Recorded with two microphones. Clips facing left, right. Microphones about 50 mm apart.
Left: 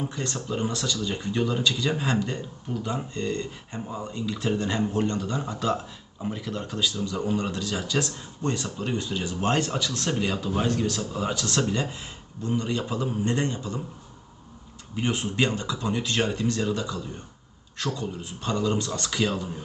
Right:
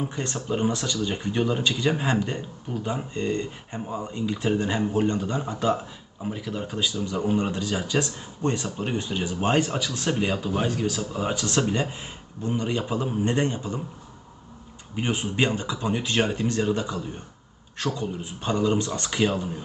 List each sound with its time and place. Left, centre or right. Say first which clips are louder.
0.0 s speech: right 1 dB; right
6.2 s speech: right 1 dB; centre; by 13.8 s right
14.9 s speech: right 1 dB; centre